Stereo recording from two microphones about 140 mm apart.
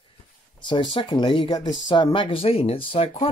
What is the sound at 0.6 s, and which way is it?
Speech, 35° left (ahead or behind).